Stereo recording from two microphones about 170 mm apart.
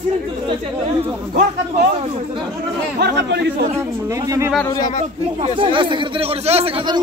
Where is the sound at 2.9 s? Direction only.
80° right.